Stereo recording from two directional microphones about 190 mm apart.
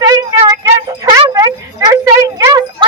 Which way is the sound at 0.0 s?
20° right (ahead or behind).